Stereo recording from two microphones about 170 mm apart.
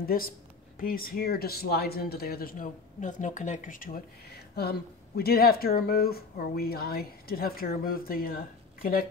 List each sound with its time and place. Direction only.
0.0 s speech: 60° left (ahead or behind)